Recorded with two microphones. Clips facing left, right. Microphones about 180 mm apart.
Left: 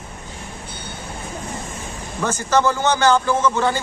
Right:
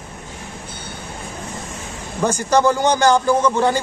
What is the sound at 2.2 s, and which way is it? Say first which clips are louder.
Speech: right 3 dB; 15° right (ahead or behind).